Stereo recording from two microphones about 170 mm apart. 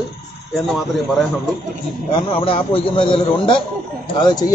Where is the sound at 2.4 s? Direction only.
35° left (ahead or behind).